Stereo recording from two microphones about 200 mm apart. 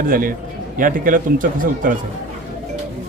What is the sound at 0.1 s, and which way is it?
A man's voice, 45° right (ahead or behind).